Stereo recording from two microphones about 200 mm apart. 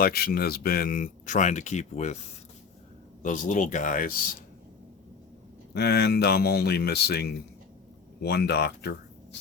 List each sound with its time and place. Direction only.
0.0 s speech: 50° left (ahead or behind); by 2.1 s 35° left (ahead or behind)
3.2 s speech: 40° left (ahead or behind)
5.7 s speech: 55° left (ahead or behind)